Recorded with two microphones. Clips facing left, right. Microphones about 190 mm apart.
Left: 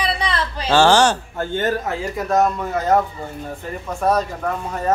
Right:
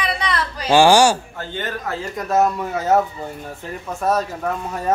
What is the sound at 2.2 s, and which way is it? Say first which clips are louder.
Speech: even; 5° right (ahead or behind).